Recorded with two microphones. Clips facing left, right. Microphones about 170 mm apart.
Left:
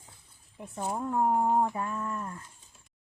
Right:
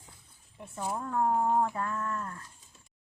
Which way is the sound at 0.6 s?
15° left (ahead or behind).